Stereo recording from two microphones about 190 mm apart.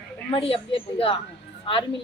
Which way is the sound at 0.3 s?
30° left (ahead or behind).